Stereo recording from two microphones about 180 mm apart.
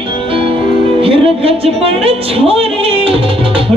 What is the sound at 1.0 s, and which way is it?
Music, 30° right (ahead or behind).